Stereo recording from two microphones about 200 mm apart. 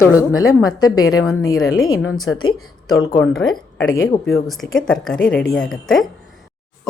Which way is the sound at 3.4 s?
80° left.